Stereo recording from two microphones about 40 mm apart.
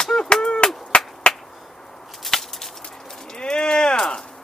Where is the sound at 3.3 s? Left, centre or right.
Centre.